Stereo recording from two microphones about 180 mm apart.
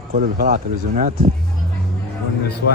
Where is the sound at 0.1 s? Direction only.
50° right (ahead or behind).